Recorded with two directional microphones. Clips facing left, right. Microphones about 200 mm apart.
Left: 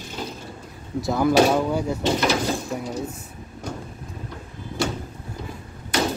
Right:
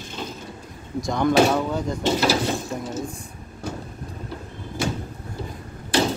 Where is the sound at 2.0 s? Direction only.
30° right (ahead or behind).